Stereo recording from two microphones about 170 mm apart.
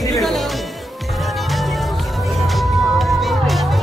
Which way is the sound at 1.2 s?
Centre (ahead or behind).